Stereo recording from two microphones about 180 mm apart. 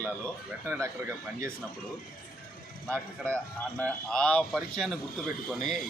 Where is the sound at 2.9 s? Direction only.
5° left (ahead or behind).